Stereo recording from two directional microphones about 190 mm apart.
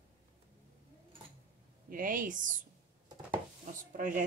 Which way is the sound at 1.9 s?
45° right (ahead or behind).